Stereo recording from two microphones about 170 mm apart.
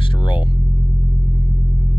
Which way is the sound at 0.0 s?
30° left (ahead or behind).